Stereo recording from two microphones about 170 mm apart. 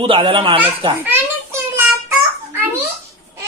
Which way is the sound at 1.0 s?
10° right (ahead or behind).